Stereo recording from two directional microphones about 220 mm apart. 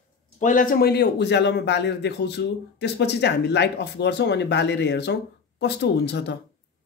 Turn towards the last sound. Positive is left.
turn(degrees=50)  # may be behind; listen again after turning